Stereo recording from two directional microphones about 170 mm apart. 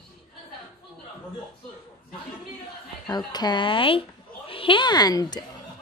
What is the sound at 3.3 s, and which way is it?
A woman's voice, 25° left (ahead or behind).